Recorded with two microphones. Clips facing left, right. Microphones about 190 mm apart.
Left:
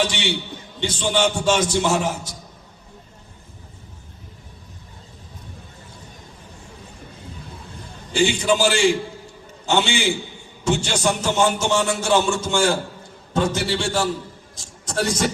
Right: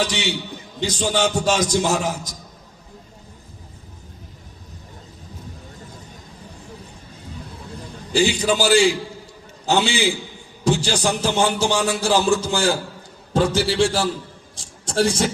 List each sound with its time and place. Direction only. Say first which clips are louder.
0.1 s a man's voice: right 1 dB; 40° right (ahead or behind)
8.1 s a man's voice: even; 35° right (ahead or behind)
14.5 s a sound: right 3 dB; 30° right (ahead or behind)